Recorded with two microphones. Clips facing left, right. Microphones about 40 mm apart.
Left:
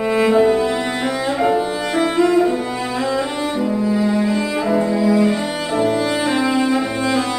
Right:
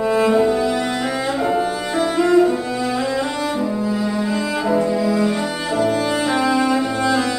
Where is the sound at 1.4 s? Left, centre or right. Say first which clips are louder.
Left 3 dB; left.